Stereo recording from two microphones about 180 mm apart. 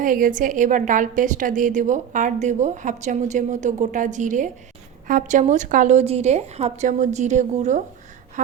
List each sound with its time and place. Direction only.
0.0 s a woman's voice: 50° right (ahead or behind)